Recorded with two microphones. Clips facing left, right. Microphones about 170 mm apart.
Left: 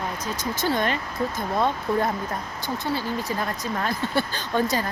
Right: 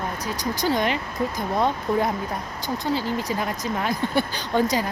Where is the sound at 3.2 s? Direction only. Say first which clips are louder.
Right 2 dB; 15° right (ahead or behind).